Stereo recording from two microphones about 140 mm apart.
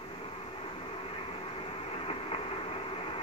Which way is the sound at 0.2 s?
40° left (ahead or behind).